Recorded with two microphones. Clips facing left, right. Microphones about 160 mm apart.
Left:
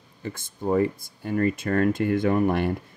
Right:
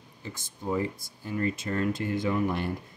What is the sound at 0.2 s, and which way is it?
Speech, 55° left (ahead or behind).